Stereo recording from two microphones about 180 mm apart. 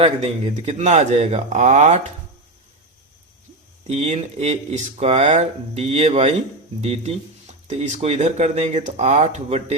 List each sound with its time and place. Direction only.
0.0 s speech: 35° right (ahead or behind)
3.8 s speech: 40° right (ahead or behind)